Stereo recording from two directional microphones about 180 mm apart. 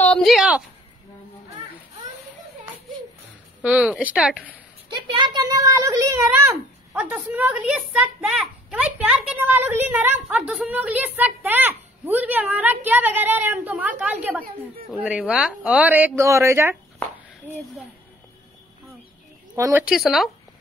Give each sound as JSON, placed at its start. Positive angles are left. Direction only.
{"t": 0.0, "sound": "speech", "side_deg": 5}
{"t": 3.6, "sound": "a child's voice", "side_deg": -5}
{"t": 4.8, "sound": "speech", "side_deg": -25}
{"t": 6.9, "sound": "a child's voice", "side_deg": -5}
{"t": 19.5, "sound": "a woman's voice", "side_deg": -15}
{"t": 19.8, "sound": "speech", "side_deg": -5}